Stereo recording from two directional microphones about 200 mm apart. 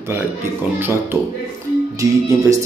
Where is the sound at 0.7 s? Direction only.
10° right (ahead or behind).